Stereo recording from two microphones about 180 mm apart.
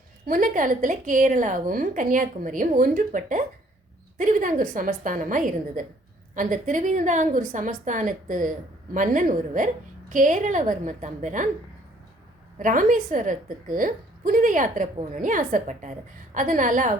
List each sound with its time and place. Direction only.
0.3 s a woman's voice: 50° right (ahead or behind)
12.5 s a woman's voice: 45° right (ahead or behind)